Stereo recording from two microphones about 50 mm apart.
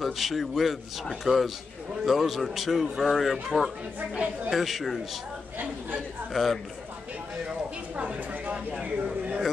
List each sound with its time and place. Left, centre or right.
0.0 s a man's voice: centre
6.3 s a man's voice: centre
7.9 s a sound: right